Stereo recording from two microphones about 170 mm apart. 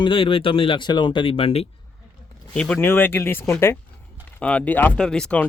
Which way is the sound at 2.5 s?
5° left (ahead or behind).